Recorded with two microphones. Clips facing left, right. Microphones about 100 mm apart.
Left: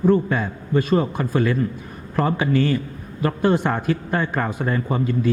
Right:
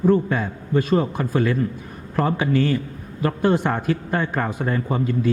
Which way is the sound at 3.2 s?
20° left (ahead or behind).